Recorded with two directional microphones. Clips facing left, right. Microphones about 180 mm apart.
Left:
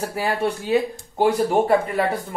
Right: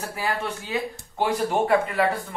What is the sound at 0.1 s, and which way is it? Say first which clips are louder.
Speech: left 3 dB; 35° left (ahead or behind).